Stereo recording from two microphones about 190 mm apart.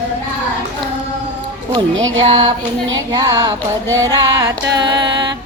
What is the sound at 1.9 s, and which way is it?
Music, 90° right.